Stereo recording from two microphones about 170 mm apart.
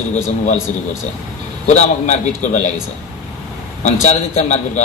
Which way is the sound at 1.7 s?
45° left (ahead or behind).